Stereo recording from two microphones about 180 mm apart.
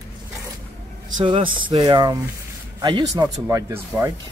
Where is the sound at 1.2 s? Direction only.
30° right (ahead or behind).